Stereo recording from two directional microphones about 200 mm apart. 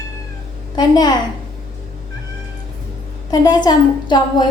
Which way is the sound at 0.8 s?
20° left (ahead or behind).